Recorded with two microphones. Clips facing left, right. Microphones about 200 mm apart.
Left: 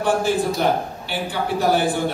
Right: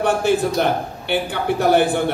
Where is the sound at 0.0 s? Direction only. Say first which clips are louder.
Right 2 dB; 65° right (ahead or behind).